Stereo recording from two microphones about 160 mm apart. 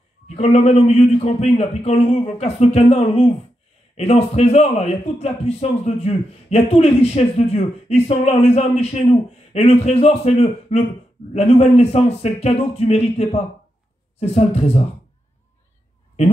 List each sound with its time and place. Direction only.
0.3 s a man's voice: 40° left (ahead or behind)